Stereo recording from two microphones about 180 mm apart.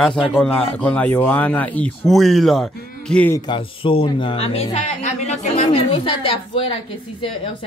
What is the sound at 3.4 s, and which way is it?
A man's voice, 30° left (ahead or behind).